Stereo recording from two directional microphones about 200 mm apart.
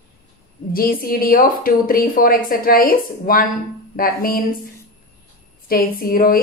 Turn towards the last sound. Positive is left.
turn(degrees=45)  # may be behind; listen again after turning